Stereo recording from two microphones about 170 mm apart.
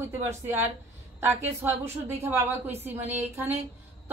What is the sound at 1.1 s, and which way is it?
Speech, 15° right (ahead or behind).